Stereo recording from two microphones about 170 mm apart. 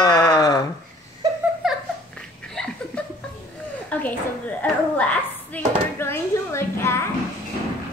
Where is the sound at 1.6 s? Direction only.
Centre (ahead or behind).